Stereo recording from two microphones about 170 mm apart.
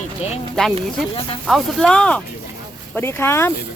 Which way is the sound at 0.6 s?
5° left (ahead or behind).